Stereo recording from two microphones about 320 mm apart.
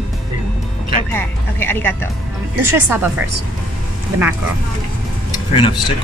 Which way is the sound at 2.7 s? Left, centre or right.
Centre.